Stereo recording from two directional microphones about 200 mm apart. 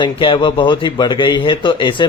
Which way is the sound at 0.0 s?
25° left (ahead or behind).